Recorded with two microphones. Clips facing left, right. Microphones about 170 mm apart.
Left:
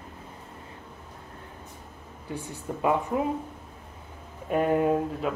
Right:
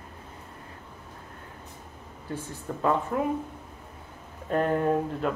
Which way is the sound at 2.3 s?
15° left (ahead or behind).